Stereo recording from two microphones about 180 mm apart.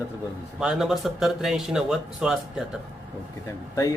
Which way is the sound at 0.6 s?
5° right (ahead or behind).